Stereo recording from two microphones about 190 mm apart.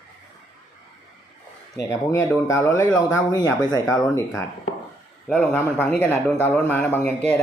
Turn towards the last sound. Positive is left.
turn(degrees=10)  # may be behind; listen again after turning